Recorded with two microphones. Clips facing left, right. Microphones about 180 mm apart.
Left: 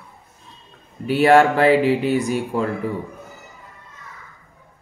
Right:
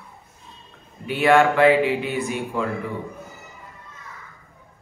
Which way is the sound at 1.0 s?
40° left (ahead or behind).